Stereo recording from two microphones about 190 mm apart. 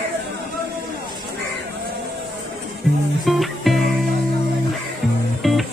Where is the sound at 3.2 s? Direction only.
Centre (ahead or behind).